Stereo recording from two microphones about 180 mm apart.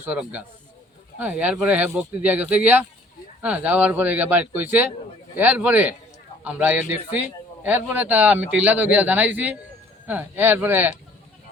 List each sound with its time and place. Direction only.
0.0 s a man's voice: 10° right (ahead or behind)